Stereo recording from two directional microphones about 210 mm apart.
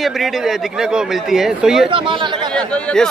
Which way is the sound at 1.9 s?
25° right (ahead or behind).